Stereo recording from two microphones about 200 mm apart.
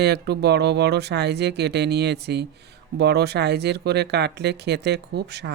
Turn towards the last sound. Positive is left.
turn(degrees=-55)  # may be behind; listen again after turning